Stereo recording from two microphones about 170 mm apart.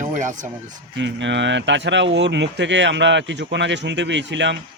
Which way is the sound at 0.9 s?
90° right.